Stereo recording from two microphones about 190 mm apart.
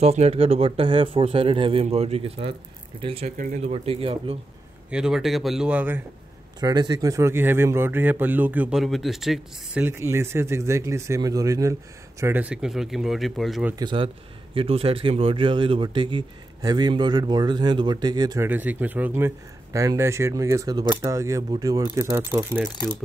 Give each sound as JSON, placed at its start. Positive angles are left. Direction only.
{"t": 0.0, "sound": "speech", "side_deg": -35}
{"t": 3.3, "sound": "speech", "side_deg": -40}
{"t": 4.9, "sound": "speech", "side_deg": -5}
{"t": 6.6, "sound": "speech", "side_deg": -20}
{"t": 13.7, "sound": "a man's voice", "side_deg": -25}
{"t": 18.5, "sound": "speech", "side_deg": -10}